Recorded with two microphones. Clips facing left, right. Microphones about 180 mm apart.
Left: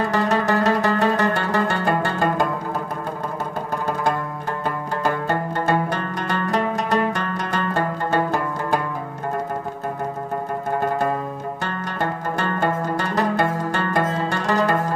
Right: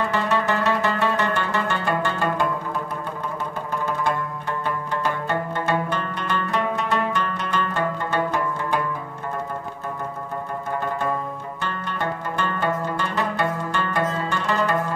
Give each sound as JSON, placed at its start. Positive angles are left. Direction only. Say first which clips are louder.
{"t": 0.0, "sound": "zither", "louder": "left 2 dB", "side_deg": 40}
{"t": 4.6, "sound": "zither", "louder": "left 3 dB", "side_deg": 40}
{"t": 11.6, "sound": "music", "louder": "left 1 dB", "side_deg": 40}